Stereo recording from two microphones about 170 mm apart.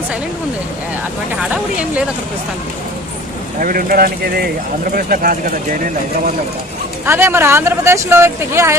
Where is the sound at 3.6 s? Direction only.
55° right (ahead or behind).